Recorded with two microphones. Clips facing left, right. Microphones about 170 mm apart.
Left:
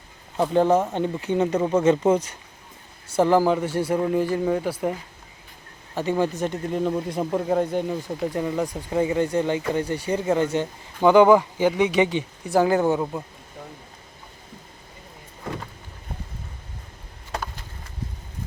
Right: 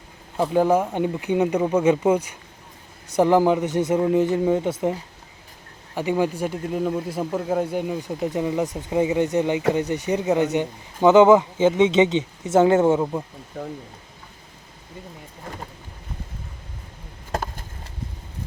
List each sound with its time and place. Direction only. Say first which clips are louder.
0.3 s speech: even; 5° right (ahead or behind); by 4.9 s 25° right (ahead or behind)
5.9 s speech: right 1 dB; 10° right (ahead or behind)
17.3 s a sound: right 4 dB; 45° right (ahead or behind)